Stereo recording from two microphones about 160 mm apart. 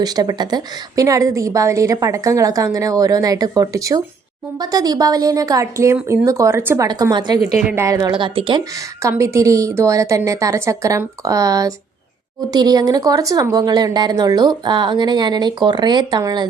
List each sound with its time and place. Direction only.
0.0 s a woman's voice: 25° right (ahead or behind)
6.8 s a woman's voice: 25° right (ahead or behind)
7.4 s a woman's voice: 10° right (ahead or behind)
7.9 s a woman's voice: 20° right (ahead or behind)
8.2 s speech: 30° right (ahead or behind)
9.0 s a woman's voice: 20° right (ahead or behind)